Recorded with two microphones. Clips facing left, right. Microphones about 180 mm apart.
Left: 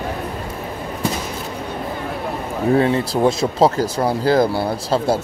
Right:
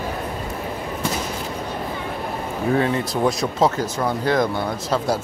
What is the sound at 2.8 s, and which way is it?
Speech, 30° left (ahead or behind).